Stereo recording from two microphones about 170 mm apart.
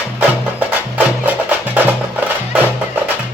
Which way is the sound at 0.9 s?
10° right (ahead or behind).